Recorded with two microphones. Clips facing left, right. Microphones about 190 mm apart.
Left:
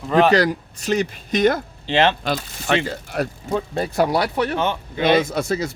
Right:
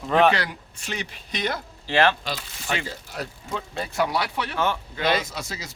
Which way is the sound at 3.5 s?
40° left (ahead or behind).